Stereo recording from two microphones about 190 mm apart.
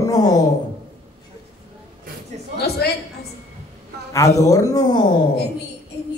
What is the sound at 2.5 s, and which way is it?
Speech, 55° left (ahead or behind).